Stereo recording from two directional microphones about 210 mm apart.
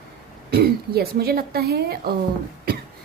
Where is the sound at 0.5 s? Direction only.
45° right (ahead or behind).